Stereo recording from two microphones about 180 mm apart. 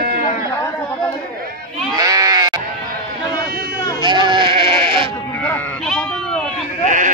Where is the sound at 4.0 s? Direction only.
25° right (ahead or behind).